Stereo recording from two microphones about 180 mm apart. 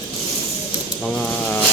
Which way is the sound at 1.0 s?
5° left (ahead or behind).